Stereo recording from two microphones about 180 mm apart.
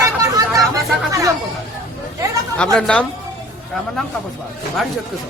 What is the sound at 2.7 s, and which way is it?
Speech, 5° left (ahead or behind).